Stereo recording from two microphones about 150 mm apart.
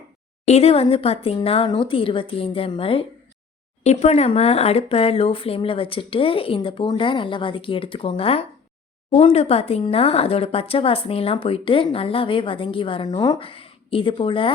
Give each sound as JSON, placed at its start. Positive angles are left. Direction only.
{"t": 0.4, "sound": "speech", "side_deg": 45}